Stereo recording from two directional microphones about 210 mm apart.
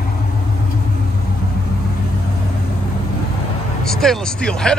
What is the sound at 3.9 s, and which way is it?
Speech, centre (ahead or behind).